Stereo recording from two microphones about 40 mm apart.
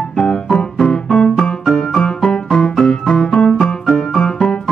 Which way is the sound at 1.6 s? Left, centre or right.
Centre.